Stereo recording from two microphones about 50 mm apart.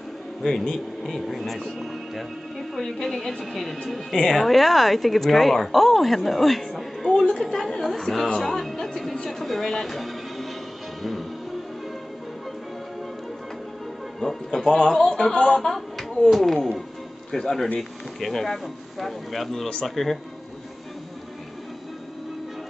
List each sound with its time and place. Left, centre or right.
0.4 s a man's voice: centre
11.0 s music: centre
14.2 s speech: centre
14.7 s a man's voice: centre